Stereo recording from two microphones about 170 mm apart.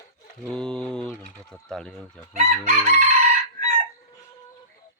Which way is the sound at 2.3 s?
40° right (ahead or behind).